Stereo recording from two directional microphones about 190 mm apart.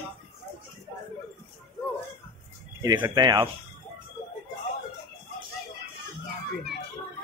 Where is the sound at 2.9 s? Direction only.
15° right (ahead or behind).